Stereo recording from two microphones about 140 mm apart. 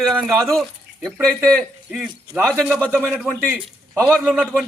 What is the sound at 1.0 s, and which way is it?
A man's voice, 5° left (ahead or behind).